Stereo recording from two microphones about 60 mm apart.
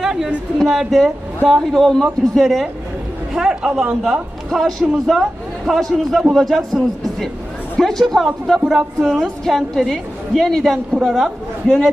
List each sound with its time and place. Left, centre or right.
0.0 s a sound: centre
0.6 s a woman's voice: centre
4.5 s a woman's voice: centre